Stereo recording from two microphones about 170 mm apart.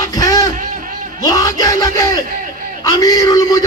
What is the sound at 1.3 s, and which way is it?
Speech, 20° left (ahead or behind).